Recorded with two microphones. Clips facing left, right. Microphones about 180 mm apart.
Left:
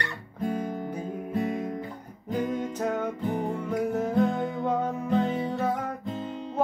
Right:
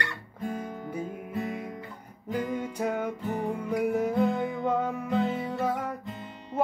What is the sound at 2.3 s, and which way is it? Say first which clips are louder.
Music: left 2 dB; 10° right (ahead or behind).